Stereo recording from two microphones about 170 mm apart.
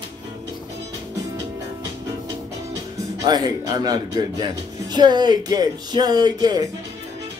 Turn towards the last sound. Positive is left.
turn(degrees=-25)  # may be behind; listen again after turning